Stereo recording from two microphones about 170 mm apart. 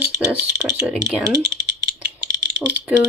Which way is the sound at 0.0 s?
10° right (ahead or behind).